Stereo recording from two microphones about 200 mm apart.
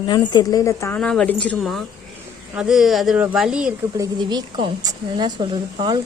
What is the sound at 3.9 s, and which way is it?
A woman's voice, 20° right (ahead or behind).